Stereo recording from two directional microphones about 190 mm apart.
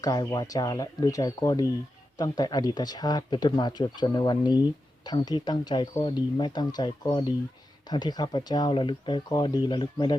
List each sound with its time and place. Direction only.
0.0 s speech: 20° left (ahead or behind)